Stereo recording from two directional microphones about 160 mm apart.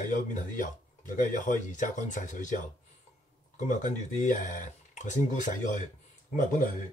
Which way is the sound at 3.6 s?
50° left (ahead or behind).